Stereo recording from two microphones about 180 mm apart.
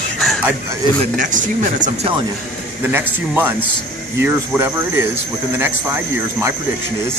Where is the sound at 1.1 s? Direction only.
45° right (ahead or behind).